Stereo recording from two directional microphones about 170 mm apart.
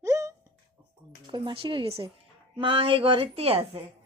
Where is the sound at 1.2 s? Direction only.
30° right (ahead or behind).